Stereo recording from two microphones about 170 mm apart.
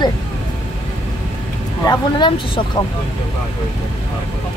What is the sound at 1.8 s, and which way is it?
Speech, 25° left (ahead or behind).